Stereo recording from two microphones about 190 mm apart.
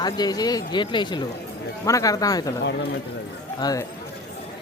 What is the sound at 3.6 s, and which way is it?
Speech, 20° left (ahead or behind).